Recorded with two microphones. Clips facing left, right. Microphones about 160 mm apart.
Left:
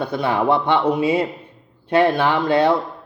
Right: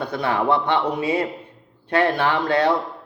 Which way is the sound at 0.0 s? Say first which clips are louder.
Left 2 dB; 25° left (ahead or behind).